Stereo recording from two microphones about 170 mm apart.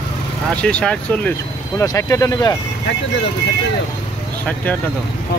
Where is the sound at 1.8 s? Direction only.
20° left (ahead or behind).